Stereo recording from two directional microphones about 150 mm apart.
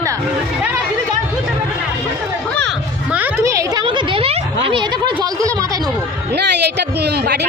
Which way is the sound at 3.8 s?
35° right (ahead or behind).